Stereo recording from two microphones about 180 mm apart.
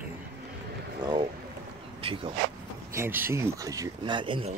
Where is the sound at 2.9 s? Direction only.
15° right (ahead or behind); by 4.5 s 30° right (ahead or behind).